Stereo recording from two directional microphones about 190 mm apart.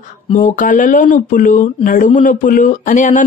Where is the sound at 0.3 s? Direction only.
40° left (ahead or behind).